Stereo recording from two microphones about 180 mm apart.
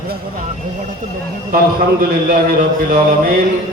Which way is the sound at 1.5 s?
55° right (ahead or behind).